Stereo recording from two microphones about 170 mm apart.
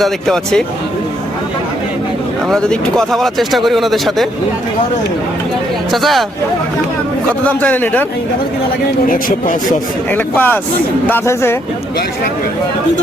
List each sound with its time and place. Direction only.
0.0 s speech: centre (ahead or behind)
2.5 s speech: 5° left (ahead or behind)
5.9 s speech: centre (ahead or behind)
7.4 s a man's voice: 10° left (ahead or behind)
9.0 s speech: 50° left (ahead or behind)
10.1 s a man's voice: 10° left (ahead or behind)